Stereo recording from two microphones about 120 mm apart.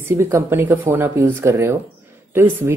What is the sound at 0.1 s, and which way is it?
Speech, 20° right (ahead or behind).